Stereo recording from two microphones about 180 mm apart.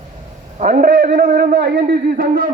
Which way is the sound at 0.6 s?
45° right (ahead or behind).